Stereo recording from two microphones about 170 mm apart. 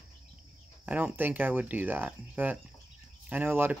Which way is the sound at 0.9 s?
10° right (ahead or behind).